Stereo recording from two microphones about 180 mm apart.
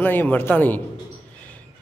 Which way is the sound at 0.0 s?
10° left (ahead or behind).